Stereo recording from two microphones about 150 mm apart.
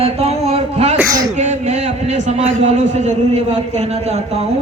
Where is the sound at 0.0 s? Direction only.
45° right (ahead or behind).